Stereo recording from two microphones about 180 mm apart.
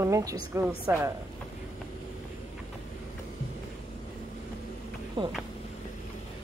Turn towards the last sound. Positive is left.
turn(degrees=-25)  # may be behind; listen again after turning